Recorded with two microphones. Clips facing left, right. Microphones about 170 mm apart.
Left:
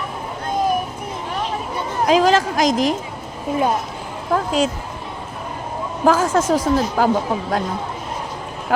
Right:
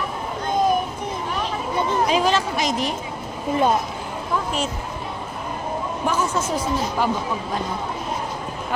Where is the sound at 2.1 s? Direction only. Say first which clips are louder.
Left 5 dB; 90° left.